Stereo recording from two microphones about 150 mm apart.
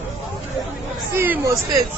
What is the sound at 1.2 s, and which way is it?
Speech, 10° right (ahead or behind).